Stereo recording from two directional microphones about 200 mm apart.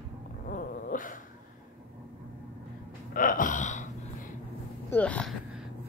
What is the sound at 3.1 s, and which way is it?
Gasp, 40° left (ahead or behind).